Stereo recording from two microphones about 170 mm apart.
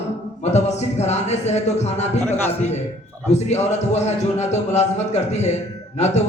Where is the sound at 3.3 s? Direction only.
40° left (ahead or behind).